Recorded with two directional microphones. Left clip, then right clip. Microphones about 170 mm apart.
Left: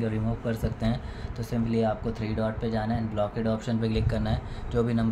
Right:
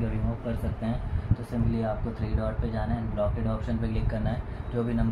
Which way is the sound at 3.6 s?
45° left (ahead or behind).